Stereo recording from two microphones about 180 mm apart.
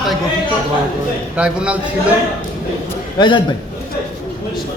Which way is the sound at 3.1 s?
25° left (ahead or behind).